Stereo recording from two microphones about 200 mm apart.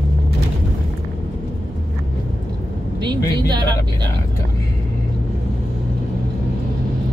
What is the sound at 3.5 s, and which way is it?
Speech, 20° right (ahead or behind).